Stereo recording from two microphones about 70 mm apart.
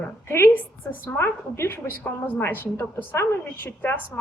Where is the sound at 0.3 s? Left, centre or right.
Left.